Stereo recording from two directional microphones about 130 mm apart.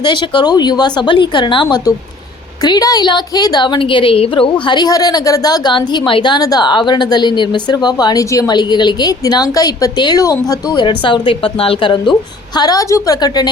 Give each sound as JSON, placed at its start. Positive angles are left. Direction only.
{"t": 0.0, "sound": "a woman's voice", "side_deg": 35}
{"t": 4.6, "sound": "a woman's voice", "side_deg": 35}